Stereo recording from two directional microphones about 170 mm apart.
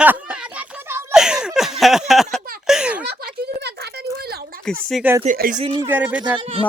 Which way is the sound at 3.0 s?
75° right (ahead or behind).